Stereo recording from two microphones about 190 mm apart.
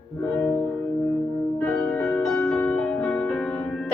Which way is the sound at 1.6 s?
5° left (ahead or behind).